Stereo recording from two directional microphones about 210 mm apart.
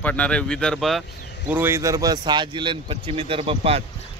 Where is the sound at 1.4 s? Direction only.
10° right (ahead or behind).